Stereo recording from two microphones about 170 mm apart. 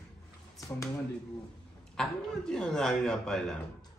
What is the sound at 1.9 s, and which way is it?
A man's voice, 5° left (ahead or behind).